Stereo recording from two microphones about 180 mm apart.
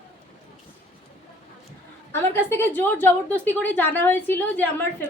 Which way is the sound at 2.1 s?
10° left (ahead or behind).